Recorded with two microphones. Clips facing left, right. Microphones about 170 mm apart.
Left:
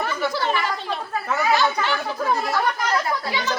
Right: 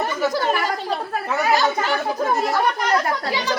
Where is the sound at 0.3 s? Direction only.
45° right (ahead or behind).